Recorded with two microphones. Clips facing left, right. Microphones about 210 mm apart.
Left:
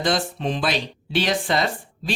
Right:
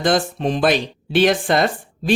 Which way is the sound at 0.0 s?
50° right (ahead or behind).